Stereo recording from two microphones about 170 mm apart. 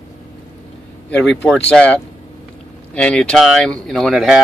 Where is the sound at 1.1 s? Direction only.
5° left (ahead or behind).